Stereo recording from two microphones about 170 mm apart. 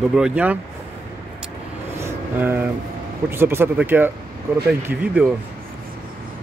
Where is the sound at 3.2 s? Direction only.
15° right (ahead or behind).